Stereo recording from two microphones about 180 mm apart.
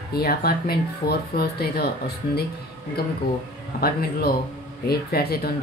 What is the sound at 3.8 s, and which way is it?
Speech, 55° left (ahead or behind).